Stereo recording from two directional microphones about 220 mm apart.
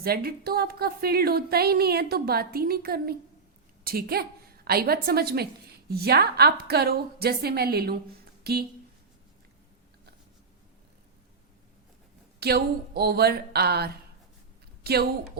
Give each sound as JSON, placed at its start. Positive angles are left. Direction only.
{"t": 0.0, "sound": "a woman's voice", "side_deg": -45}
{"t": 12.4, "sound": "a woman's voice", "side_deg": -45}